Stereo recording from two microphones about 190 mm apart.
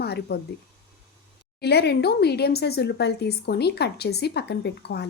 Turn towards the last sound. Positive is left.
turn(degrees=60)  # may be behind; listen again after turning